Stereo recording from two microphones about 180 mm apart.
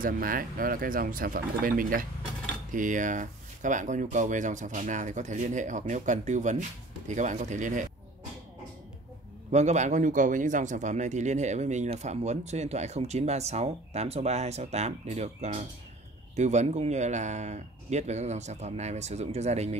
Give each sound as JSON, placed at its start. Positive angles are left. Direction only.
{"t": 0.0, "sound": "speech", "side_deg": -50}
{"t": 9.5, "sound": "a man's voice", "side_deg": -40}